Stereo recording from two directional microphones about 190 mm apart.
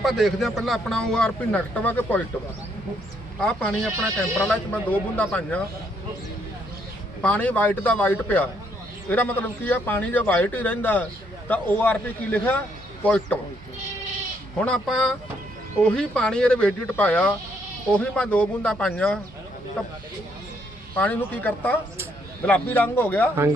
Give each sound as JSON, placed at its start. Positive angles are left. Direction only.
{"t": 0.0, "sound": "a man's voice", "side_deg": 0}
{"t": 3.4, "sound": "a man's voice", "side_deg": 5}
{"t": 7.2, "sound": "a man's voice", "side_deg": 10}
{"t": 14.6, "sound": "a man's voice", "side_deg": 5}
{"t": 20.9, "sound": "a man's voice", "side_deg": 10}